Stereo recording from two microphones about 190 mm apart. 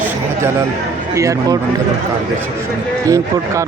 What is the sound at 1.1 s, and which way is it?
Speech, 15° right (ahead or behind).